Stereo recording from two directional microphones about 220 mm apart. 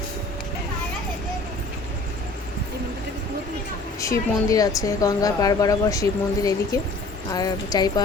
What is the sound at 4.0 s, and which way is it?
Speech, 15° left (ahead or behind).